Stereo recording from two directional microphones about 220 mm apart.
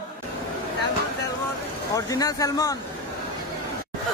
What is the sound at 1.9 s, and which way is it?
Speech, 15° left (ahead or behind).